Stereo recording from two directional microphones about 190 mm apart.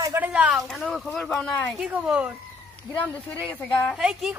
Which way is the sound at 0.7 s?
Centre (ahead or behind).